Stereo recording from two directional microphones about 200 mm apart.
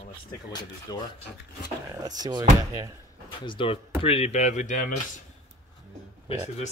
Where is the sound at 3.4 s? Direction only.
25° left (ahead or behind).